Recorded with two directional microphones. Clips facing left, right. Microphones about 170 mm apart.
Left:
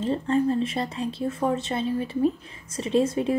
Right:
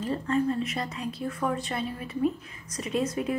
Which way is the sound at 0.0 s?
30° left (ahead or behind).